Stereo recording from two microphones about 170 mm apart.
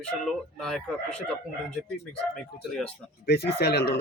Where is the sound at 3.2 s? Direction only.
65° left (ahead or behind).